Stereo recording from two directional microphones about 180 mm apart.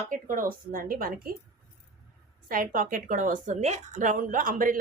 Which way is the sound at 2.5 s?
50° right (ahead or behind).